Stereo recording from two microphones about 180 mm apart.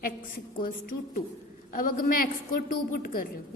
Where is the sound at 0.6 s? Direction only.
50° left (ahead or behind).